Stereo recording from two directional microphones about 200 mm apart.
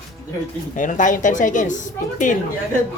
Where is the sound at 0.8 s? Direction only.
40° left (ahead or behind).